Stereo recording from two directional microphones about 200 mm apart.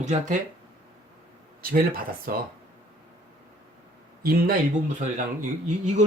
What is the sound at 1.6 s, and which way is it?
Speech, 50° right (ahead or behind).